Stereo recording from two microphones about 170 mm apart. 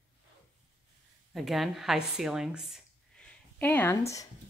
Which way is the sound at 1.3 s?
Centre (ahead or behind).